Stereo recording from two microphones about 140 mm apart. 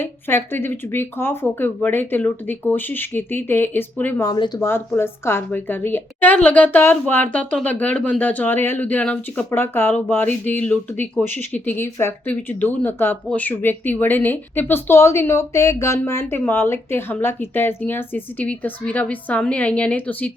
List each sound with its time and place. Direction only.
0.0 s speech: 15° left (ahead or behind)
4.3 s speech: 30° left (ahead or behind)
4.6 s speech: 15° left (ahead or behind)